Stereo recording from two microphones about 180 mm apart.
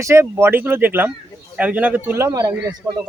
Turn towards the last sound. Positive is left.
turn(degrees=-20)  # may be behind; listen again after turning